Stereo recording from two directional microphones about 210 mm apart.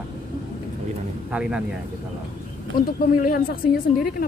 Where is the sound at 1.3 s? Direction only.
5° right (ahead or behind).